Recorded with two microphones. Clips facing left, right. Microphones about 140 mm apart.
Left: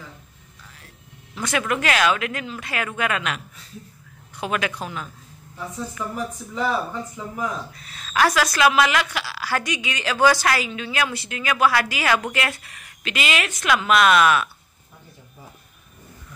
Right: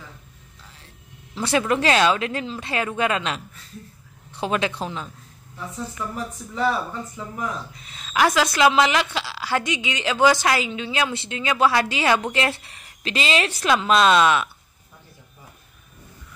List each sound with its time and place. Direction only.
1.3 s a sound: 30° right (ahead or behind)
1.7 s a woman's voice: 30° right (ahead or behind)
6.5 s speech: 15° left (ahead or behind)
7.7 s a woman's voice: 20° right (ahead or behind)